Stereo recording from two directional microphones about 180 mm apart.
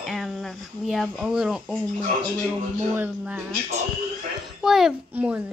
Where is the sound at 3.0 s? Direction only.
5° right (ahead or behind).